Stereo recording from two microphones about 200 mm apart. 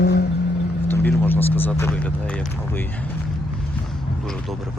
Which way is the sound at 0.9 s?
10° left (ahead or behind).